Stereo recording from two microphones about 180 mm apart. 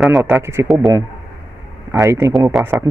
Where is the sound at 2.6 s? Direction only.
Centre (ahead or behind).